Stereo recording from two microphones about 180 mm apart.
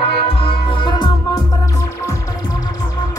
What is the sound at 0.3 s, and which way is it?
Music, 30° left (ahead or behind).